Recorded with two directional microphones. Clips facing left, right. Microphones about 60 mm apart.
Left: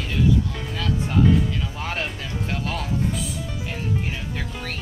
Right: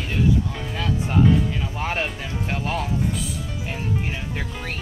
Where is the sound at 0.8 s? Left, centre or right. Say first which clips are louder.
Right 1 dB; centre.